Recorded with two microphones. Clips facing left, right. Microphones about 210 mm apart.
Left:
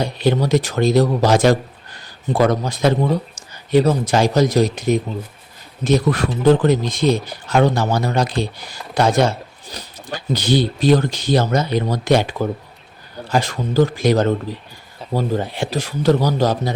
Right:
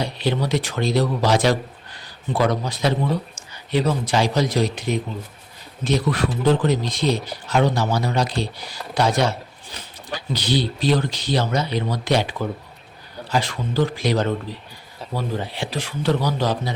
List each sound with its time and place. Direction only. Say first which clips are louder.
0.0 s speech: left 5 dB; 45° left (ahead or behind)